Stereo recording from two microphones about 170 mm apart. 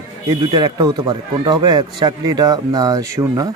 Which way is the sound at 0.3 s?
20° right (ahead or behind).